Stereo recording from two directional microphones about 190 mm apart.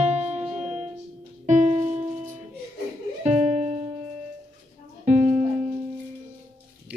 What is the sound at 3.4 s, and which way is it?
Music, 35° right (ahead or behind).